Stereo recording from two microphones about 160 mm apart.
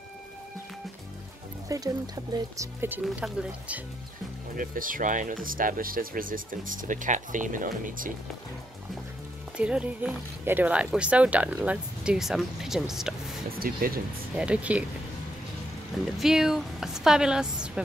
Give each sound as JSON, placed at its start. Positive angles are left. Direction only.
{"t": 1.7, "sound": "speech", "side_deg": -20}
{"t": 3.0, "sound": "speech", "side_deg": -5}
{"t": 4.6, "sound": "speech", "side_deg": -60}
{"t": 9.6, "sound": "speech", "side_deg": -5}
{"t": 13.5, "sound": "speech", "side_deg": -65}
{"t": 14.3, "sound": "speech", "side_deg": -5}
{"t": 16.2, "sound": "a woman's voice", "side_deg": -5}